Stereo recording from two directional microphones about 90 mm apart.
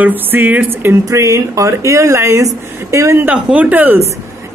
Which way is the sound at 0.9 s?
35° right (ahead or behind).